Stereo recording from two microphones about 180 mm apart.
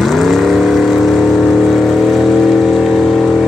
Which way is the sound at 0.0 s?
Centre (ahead or behind).